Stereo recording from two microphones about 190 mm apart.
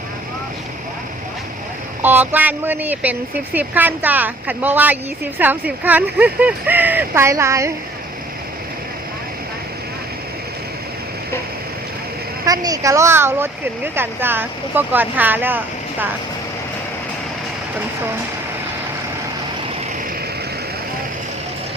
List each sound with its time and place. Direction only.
2.0 s speech: 10° right (ahead or behind)
12.5 s speech: 20° right (ahead or behind)